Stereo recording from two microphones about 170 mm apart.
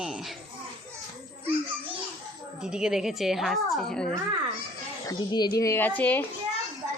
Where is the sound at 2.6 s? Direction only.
5° right (ahead or behind).